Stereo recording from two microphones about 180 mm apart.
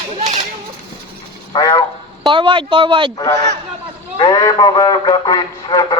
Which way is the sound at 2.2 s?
25° right (ahead or behind).